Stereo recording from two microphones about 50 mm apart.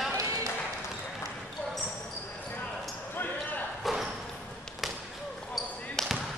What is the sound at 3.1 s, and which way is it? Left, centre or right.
Basketball bounce, left.